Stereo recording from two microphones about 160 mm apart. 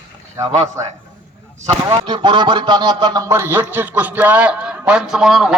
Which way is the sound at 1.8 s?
30° right (ahead or behind).